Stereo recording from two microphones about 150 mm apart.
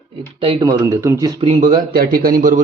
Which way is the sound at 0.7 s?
20° right (ahead or behind).